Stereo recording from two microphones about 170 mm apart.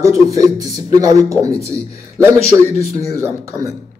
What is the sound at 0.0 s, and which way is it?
Speech, 20° right (ahead or behind).